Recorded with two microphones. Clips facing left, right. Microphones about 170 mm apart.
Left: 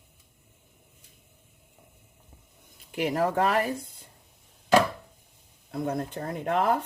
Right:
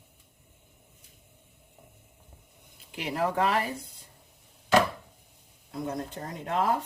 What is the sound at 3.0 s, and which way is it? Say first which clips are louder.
Speech: left 3 dB; 45° left (ahead or behind).